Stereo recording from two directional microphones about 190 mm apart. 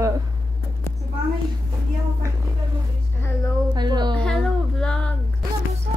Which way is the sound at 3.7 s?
20° right (ahead or behind).